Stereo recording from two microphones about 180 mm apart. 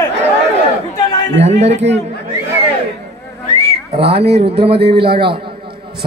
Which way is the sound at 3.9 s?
65° right (ahead or behind).